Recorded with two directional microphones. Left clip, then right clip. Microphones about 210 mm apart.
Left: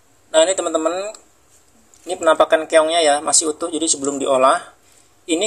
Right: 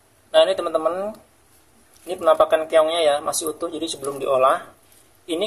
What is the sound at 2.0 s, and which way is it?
Speech, 25° left (ahead or behind).